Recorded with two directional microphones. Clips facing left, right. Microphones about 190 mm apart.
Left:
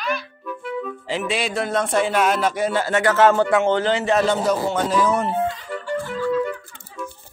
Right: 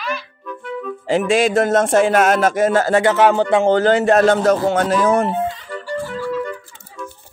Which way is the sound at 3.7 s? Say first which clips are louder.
Right 6 dB; 45° right (ahead or behind).